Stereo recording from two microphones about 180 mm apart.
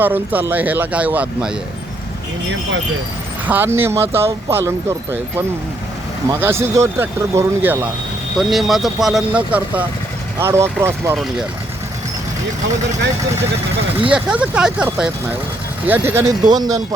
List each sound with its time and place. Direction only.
0.0 s speech: 10° right (ahead or behind)
3.4 s speech: 10° right (ahead or behind)
6.4 s speech: 15° right (ahead or behind)
8.4 s speech: centre (ahead or behind)
14.1 s speech: 5° right (ahead or behind)